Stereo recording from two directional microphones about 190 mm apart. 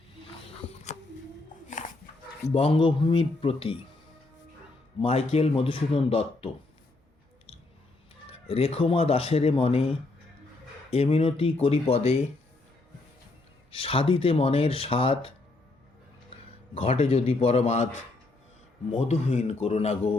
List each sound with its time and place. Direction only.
2.5 s speech: 30° left (ahead or behind)
4.9 s speech: 35° left (ahead or behind)
8.3 s speech: 30° left (ahead or behind)
13.8 s speech: 30° left (ahead or behind)
16.7 s speech: 30° left (ahead or behind)
18.9 s speech: 35° left (ahead or behind)